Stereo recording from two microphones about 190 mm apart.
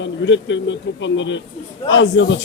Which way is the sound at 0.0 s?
80° left.